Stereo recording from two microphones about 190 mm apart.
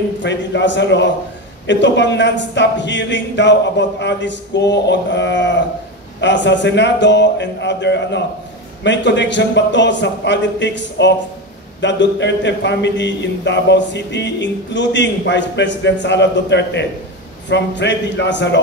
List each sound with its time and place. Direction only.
0.2 s speech: 70° left (ahead or behind)